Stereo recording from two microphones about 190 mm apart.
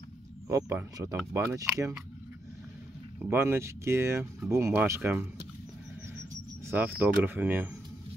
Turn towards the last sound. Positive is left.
turn(degrees=-10)  # may be behind; listen again after turning